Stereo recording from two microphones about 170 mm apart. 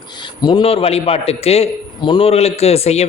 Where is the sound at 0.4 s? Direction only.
30° left (ahead or behind).